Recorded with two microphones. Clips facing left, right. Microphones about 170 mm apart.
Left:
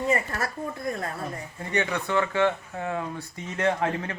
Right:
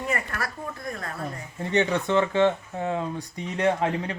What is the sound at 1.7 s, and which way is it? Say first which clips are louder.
Speech: right 3 dB; 20° right (ahead or behind).